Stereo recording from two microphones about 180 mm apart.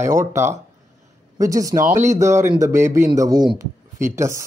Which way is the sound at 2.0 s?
15° right (ahead or behind).